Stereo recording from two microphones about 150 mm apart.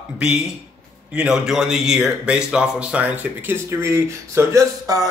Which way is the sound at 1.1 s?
5° right (ahead or behind).